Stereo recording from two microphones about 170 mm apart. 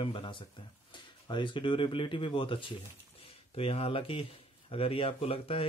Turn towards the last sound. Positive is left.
turn(degrees=35)  # may be behind; listen again after turning